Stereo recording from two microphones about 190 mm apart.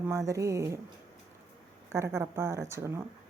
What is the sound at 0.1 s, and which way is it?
Speech, 15° right (ahead or behind).